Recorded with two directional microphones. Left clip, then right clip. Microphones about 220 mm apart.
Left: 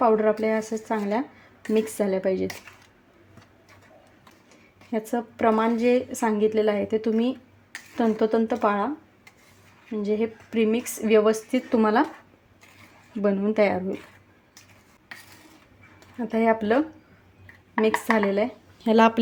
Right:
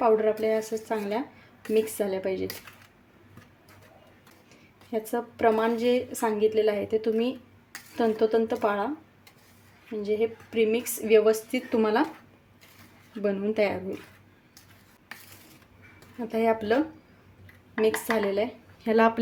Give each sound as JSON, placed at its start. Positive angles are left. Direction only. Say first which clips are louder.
{"t": 0.0, "sound": "speech", "louder": "left 2 dB", "side_deg": 15}
{"t": 4.9, "sound": "speech", "louder": "left 2 dB", "side_deg": 15}
{"t": 10.0, "sound": "speech", "louder": "left 1 dB", "side_deg": 15}
{"t": 13.2, "sound": "speech", "louder": "left 4 dB", "side_deg": 15}
{"t": 16.1, "sound": "speech", "louder": "left 3 dB", "side_deg": 15}
{"t": 18.0, "sound": "speech", "louder": "left 3 dB", "side_deg": 15}